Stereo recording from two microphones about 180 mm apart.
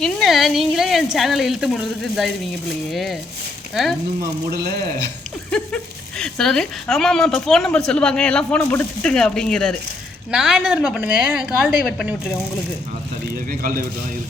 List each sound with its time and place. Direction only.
0.0 s speech: centre (ahead or behind)
5.5 s speech: 5° left (ahead or behind)
13.6 s a man's voice: 50° right (ahead or behind)